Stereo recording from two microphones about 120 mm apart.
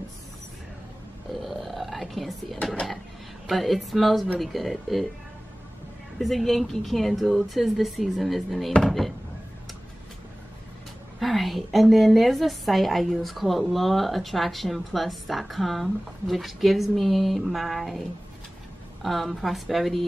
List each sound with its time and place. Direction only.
1.4 s a sound: centre (ahead or behind)
3.4 s a woman's voice: centre (ahead or behind)
6.1 s a woman's voice: centre (ahead or behind)
11.1 s a woman's voice: centre (ahead or behind)
19.0 s a woman's voice: centre (ahead or behind)